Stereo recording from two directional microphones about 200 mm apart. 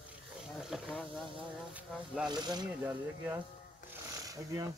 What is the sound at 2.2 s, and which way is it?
Speech, 20° right (ahead or behind).